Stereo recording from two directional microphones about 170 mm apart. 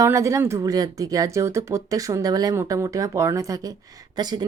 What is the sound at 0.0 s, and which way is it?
Speech, 15° right (ahead or behind).